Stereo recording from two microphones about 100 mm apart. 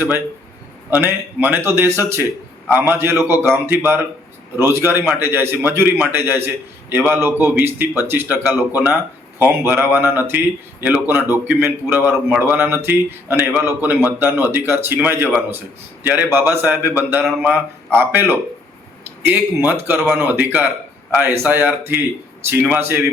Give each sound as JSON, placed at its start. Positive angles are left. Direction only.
{"t": 0.9, "sound": "speech", "side_deg": -20}